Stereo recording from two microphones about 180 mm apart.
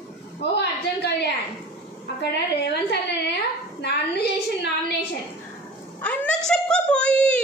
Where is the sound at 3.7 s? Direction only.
70° left (ahead or behind).